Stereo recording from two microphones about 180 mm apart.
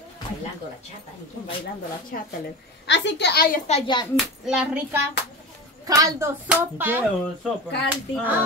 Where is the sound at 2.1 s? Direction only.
55° left (ahead or behind).